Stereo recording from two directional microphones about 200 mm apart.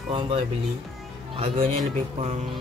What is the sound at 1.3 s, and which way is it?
Speech, 30° right (ahead or behind).